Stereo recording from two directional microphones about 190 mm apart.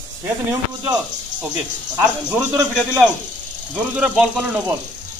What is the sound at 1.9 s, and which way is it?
Speech, 10° right (ahead or behind).